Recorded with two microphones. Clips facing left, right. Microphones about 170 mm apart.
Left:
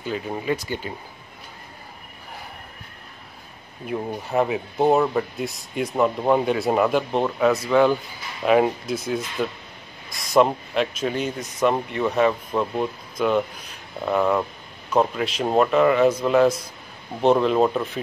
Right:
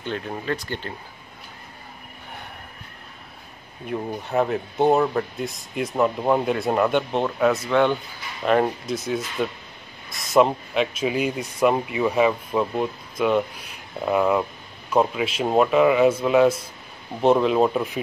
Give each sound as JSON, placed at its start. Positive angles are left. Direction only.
{"t": 0.0, "sound": "speech", "side_deg": 5}
{"t": 3.8, "sound": "speech", "side_deg": 0}